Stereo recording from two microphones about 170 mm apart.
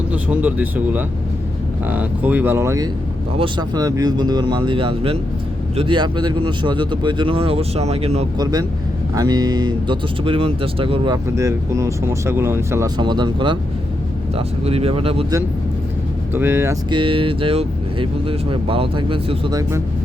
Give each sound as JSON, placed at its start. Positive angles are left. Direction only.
{"t": 0.1, "sound": "speech", "side_deg": -10}
{"t": 8.4, "sound": "speech", "side_deg": -20}
{"t": 13.0, "sound": "speech", "side_deg": -25}
{"t": 16.3, "sound": "speech", "side_deg": -15}
{"t": 16.9, "sound": "speech", "side_deg": -30}